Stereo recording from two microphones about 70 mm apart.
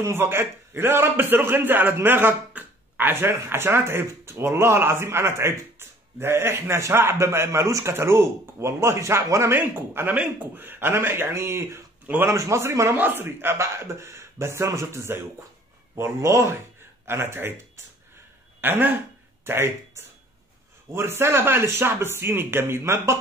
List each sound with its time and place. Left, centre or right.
0.0 s a man's voice: right
12.9 s a man's voice: right
18.6 s a man's voice: right